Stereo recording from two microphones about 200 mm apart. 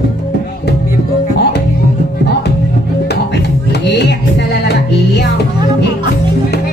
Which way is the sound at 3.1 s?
55° left (ahead or behind).